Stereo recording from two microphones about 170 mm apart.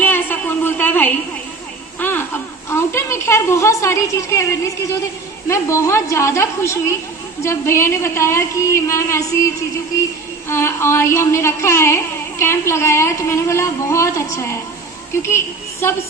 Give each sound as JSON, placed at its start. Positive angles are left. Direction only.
{"t": 0.0, "sound": "a sound", "side_deg": 10}
{"t": 2.6, "sound": "a woman's voice", "side_deg": 15}
{"t": 10.5, "sound": "a woman's voice", "side_deg": 15}